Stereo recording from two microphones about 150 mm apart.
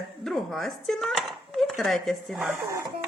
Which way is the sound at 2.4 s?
20° right (ahead or behind).